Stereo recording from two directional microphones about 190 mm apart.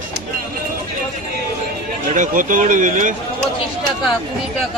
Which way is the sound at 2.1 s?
40° right (ahead or behind).